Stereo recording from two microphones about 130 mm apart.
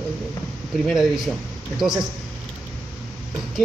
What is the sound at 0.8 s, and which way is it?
Speech, centre (ahead or behind).